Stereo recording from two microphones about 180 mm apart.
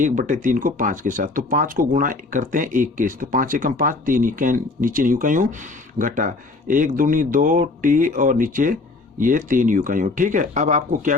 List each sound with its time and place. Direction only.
0.0 s speech: 45° right (ahead or behind)